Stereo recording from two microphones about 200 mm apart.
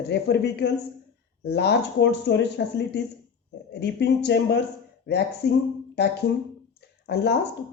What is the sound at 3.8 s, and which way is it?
A woman's voice, 55° left (ahead or behind).